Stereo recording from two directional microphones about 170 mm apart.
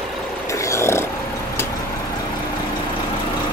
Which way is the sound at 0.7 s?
15° left (ahead or behind).